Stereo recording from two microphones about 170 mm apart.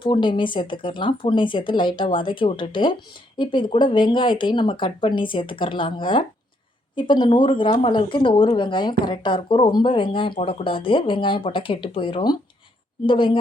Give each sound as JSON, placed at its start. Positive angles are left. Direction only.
{"t": 0.0, "sound": "speech", "side_deg": 30}